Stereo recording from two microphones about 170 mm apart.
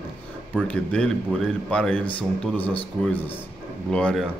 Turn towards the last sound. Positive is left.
turn(degrees=5)  # may be behind; listen again after turning